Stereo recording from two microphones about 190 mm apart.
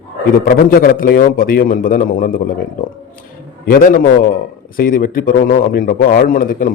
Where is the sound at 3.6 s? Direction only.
50° left (ahead or behind).